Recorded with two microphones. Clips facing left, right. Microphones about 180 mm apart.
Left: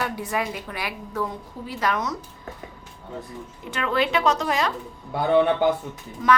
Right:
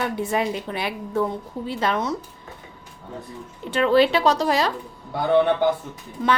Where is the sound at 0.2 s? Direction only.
25° right (ahead or behind).